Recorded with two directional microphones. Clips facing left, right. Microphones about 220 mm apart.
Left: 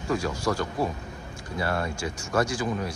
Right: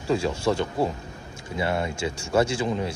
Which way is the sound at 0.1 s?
25° right (ahead or behind).